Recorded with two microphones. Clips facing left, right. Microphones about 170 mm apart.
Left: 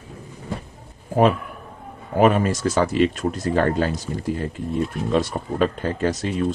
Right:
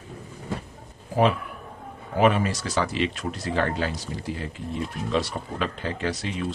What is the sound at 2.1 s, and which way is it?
Speech, 45° left (ahead or behind).